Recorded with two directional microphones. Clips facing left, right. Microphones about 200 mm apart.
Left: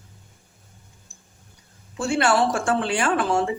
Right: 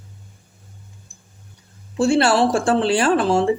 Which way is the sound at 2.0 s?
30° right (ahead or behind).